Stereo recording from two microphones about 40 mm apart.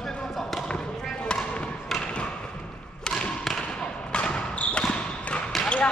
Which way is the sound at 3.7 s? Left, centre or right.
Left.